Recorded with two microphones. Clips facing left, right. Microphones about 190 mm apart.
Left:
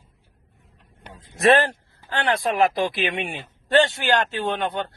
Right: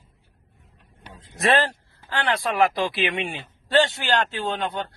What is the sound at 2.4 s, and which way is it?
A man's voice, 20° left (ahead or behind).